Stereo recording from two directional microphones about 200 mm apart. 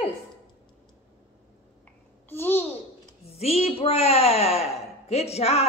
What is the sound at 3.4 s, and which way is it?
Speech, 30° left (ahead or behind).